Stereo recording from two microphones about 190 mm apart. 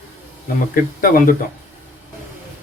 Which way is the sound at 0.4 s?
50° left (ahead or behind).